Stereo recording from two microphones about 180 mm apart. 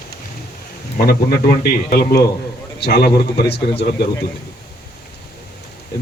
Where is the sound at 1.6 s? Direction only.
60° left (ahead or behind).